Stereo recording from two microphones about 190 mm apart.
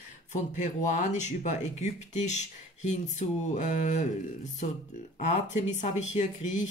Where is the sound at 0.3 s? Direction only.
40° left (ahead or behind).